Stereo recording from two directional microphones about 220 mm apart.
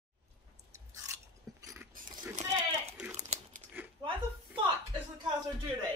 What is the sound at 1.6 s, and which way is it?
Mechanisms, 15° right (ahead or behind).